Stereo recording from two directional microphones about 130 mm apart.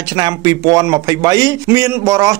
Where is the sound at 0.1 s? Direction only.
30° right (ahead or behind).